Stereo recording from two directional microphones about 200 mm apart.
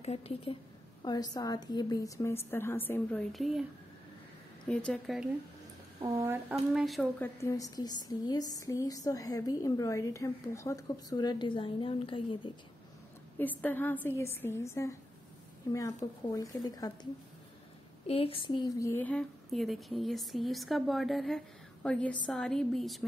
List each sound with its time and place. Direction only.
0.0 s a woman's voice: 30° left (ahead or behind); by 3.6 s centre (ahead or behind)
4.6 s speech: 5° left (ahead or behind)
6.0 s speech: 15° right (ahead or behind)
6.5 s speech: centre (ahead or behind)
7.2 s a woman's voice: 15° left (ahead or behind)
13.4 s a woman's voice: 10° left (ahead or behind)